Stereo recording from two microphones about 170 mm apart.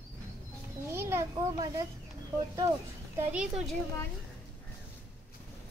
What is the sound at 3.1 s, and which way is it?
Speech, 10° right (ahead or behind).